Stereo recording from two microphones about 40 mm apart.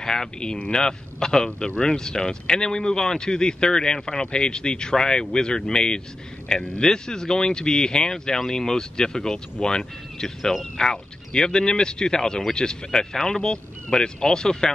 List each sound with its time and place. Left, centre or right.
0.0 s speech: centre